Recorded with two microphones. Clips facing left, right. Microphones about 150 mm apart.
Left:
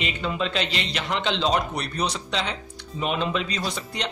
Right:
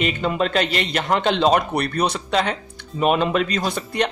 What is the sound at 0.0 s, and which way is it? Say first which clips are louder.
A man's voice: right 6 dB; 55° right (ahead or behind).